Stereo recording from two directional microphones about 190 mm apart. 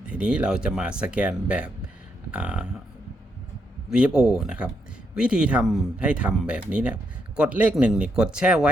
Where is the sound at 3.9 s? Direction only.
5° right (ahead or behind).